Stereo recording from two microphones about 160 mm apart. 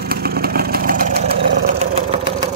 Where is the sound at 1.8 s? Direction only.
40° right (ahead or behind).